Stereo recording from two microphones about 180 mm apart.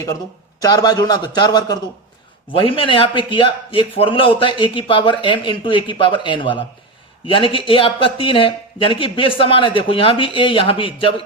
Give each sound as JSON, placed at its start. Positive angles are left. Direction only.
{"t": 0.6, "sound": "a man's voice", "side_deg": 20}